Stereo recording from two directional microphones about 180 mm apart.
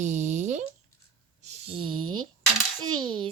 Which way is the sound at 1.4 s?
40° right (ahead or behind).